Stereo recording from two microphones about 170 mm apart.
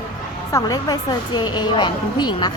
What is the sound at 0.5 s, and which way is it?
A woman's voice, 20° left (ahead or behind).